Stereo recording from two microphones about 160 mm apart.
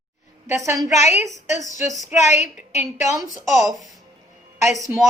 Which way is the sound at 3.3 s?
Centre (ahead or behind).